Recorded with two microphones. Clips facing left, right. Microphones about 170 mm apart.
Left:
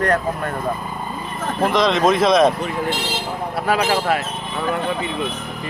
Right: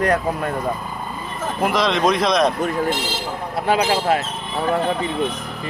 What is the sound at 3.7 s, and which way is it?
Speech, 25° right (ahead or behind).